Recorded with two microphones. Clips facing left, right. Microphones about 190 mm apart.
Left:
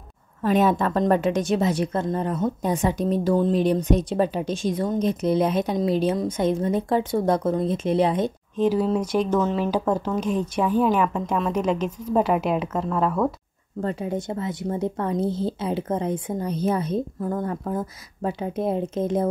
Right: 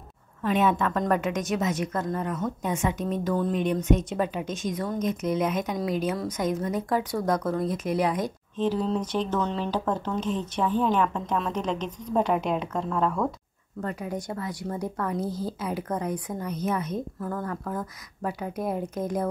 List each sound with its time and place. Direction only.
0.4 s a woman's voice: 40° left (ahead or behind)
8.5 s speech: 10° left (ahead or behind)
13.7 s a woman's voice: 30° left (ahead or behind)
17.2 s a woman's voice: 20° left (ahead or behind)